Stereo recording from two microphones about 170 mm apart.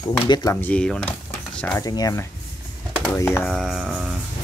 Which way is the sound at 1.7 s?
20° left (ahead or behind).